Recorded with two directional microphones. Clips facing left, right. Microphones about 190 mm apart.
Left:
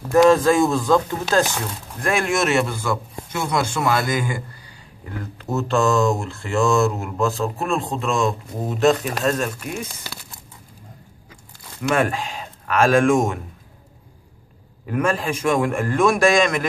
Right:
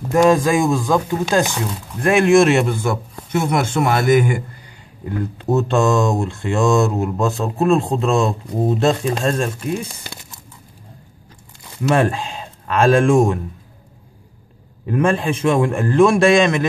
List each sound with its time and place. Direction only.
0.1 s speech: 15° right (ahead or behind)
5.6 s speech: 20° right (ahead or behind)
11.9 s speech: 30° right (ahead or behind)
14.9 s speech: 25° right (ahead or behind)